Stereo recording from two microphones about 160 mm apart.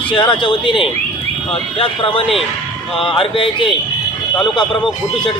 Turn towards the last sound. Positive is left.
turn(degrees=30)  # may be behind; listen again after turning